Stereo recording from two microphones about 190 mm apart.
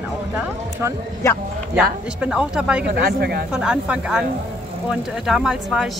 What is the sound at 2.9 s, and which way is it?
Speech, 55° right (ahead or behind).